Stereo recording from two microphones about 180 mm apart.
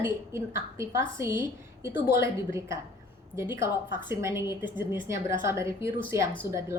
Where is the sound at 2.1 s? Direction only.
15° right (ahead or behind).